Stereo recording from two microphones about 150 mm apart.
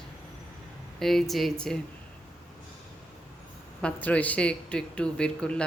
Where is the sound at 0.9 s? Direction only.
Centre (ahead or behind).